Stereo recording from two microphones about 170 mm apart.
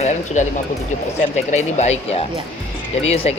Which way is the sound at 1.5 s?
40° left (ahead or behind).